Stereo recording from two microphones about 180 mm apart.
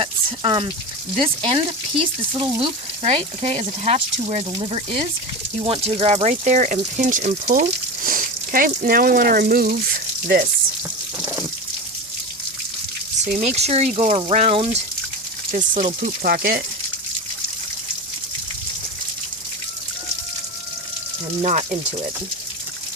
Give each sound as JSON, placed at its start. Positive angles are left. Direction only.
{"t": 0.0, "sound": "speech", "side_deg": -30}
{"t": 13.4, "sound": "speech", "side_deg": -35}
{"t": 21.4, "sound": "speech", "side_deg": -40}